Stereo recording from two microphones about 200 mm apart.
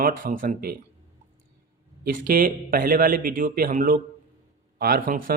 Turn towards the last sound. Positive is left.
turn(degrees=-45)  # may be behind; listen again after turning